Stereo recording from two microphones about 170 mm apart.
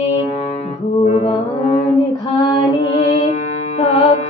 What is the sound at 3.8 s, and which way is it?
Music, 40° left (ahead or behind).